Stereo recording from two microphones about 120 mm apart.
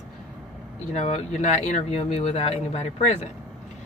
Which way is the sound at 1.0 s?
60° left (ahead or behind).